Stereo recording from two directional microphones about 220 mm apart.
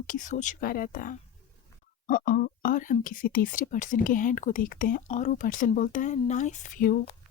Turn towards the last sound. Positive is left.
turn(degrees=35)  # may be behind; listen again after turning